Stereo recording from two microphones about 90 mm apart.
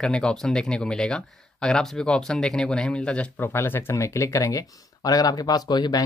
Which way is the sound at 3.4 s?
25° left (ahead or behind).